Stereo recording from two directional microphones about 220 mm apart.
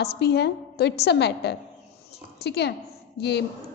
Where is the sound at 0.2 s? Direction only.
50° left (ahead or behind).